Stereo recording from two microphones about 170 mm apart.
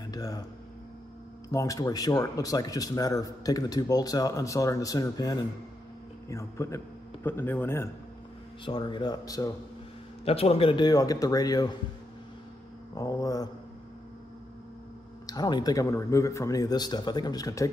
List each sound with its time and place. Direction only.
0.0 s a sound: 20° left (ahead or behind)
1.5 s speech: 20° left (ahead or behind)
8.6 s speech: 30° left (ahead or behind)
10.2 s speech: 35° left (ahead or behind)
12.9 s speech: 20° left (ahead or behind)
15.2 s speech: 20° left (ahead or behind)